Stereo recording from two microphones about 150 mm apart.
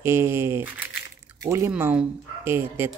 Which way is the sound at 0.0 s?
15° right (ahead or behind).